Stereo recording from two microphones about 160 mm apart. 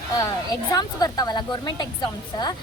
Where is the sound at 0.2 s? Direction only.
25° left (ahead or behind).